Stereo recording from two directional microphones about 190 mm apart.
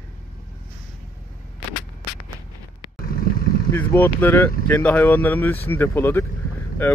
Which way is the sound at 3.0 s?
50° left (ahead or behind).